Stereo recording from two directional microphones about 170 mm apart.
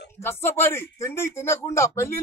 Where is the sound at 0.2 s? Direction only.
15° left (ahead or behind).